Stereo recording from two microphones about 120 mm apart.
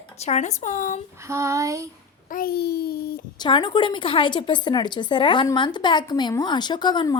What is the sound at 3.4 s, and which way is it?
A woman's voice, 40° left (ahead or behind).